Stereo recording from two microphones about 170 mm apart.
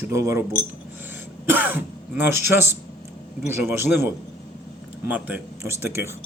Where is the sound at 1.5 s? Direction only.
10° right (ahead or behind).